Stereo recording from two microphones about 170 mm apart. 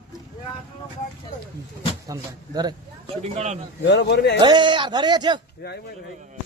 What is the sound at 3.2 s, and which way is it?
Speech, 40° right (ahead or behind).